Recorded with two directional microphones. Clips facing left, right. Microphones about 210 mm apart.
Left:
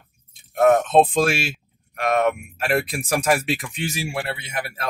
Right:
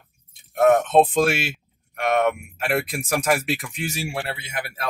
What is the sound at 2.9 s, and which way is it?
Speech, centre (ahead or behind).